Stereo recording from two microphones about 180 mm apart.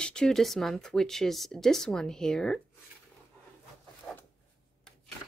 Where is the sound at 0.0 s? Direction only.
5° left (ahead or behind).